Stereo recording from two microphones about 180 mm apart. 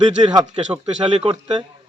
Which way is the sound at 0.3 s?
25° right (ahead or behind).